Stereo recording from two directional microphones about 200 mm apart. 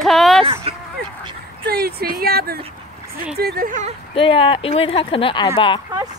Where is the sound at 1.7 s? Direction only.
50° right (ahead or behind).